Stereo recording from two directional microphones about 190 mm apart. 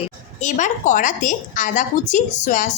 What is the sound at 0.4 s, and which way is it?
A woman's voice, 40° left (ahead or behind).